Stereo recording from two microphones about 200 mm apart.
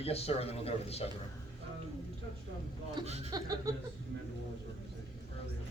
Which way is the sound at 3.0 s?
20° right (ahead or behind).